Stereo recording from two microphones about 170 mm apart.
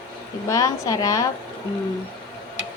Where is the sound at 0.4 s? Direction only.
20° left (ahead or behind).